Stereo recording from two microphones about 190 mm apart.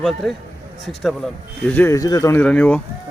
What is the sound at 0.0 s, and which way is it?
Speech, centre (ahead or behind).